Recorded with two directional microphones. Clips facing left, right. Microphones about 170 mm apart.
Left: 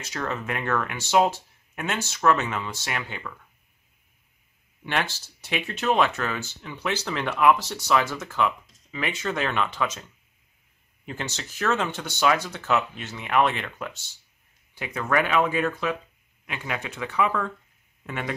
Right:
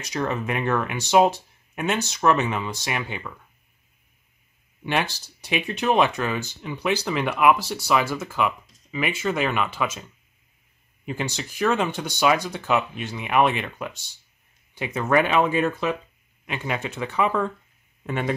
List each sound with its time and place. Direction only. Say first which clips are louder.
0.0 s speech: right 4 dB; 15° right (ahead or behind)
4.8 s speech: right 3 dB; 15° right (ahead or behind)
11.1 s speech: right 5 dB; 10° right (ahead or behind); by 18.3 s 30° right (ahead or behind)